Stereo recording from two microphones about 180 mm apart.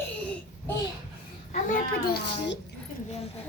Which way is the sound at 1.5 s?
50° left (ahead or behind).